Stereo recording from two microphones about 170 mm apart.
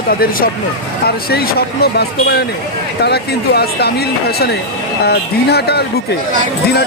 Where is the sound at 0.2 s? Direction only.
60° left (ahead or behind).